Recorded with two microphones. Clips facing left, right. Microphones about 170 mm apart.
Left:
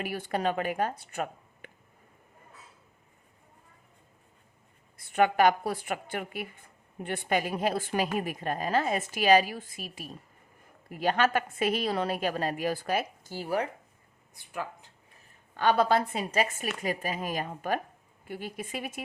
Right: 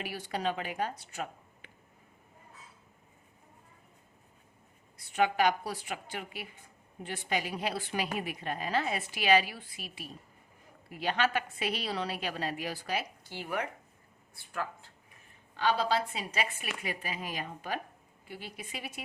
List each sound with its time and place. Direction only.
0.0 s a woman's voice: 50° left (ahead or behind)
4.9 s a woman's voice: 50° left (ahead or behind); by 13.7 s 35° left (ahead or behind)
14.3 s speech: 15° left (ahead or behind)
15.5 s a woman's voice: 55° left (ahead or behind)